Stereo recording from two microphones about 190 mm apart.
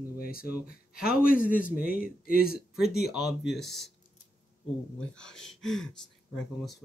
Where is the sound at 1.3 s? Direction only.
45° left (ahead or behind).